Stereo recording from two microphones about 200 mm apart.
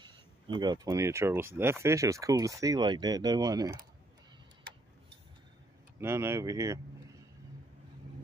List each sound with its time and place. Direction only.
0.6 s speech: 20° right (ahead or behind)
5.9 s speech: 10° right (ahead or behind)